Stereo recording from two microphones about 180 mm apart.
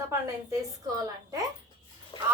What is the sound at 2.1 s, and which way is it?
Speech, 25° left (ahead or behind).